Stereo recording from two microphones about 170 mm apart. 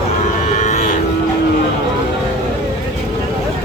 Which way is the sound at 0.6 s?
45° left (ahead or behind).